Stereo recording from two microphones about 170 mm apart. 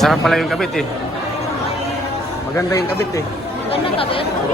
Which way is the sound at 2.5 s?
20° left (ahead or behind).